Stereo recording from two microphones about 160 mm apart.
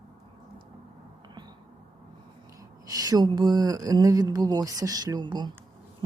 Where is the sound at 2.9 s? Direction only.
25° right (ahead or behind).